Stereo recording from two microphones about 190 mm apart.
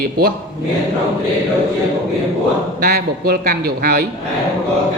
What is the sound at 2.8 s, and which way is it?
Speech, 55° right (ahead or behind).